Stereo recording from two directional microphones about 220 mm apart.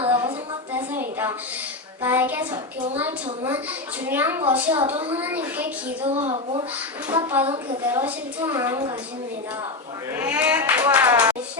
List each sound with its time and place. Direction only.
0.0 s a sound: 25° right (ahead or behind)
0.7 s a sound: 10° right (ahead or behind)
2.0 s speech: 10° right (ahead or behind)
6.2 s a woman's voice: 25° right (ahead or behind)
7.1 s a woman's voice: 10° right (ahead or behind)
10.2 s speech: 10° right (ahead or behind)